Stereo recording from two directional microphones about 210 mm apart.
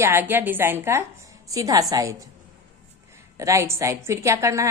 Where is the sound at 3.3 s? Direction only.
15° right (ahead or behind).